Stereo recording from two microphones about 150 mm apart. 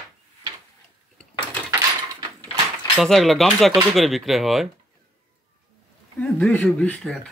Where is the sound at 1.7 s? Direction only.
25° right (ahead or behind).